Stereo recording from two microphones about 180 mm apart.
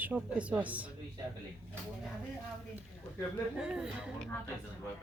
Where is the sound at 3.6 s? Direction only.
5° right (ahead or behind).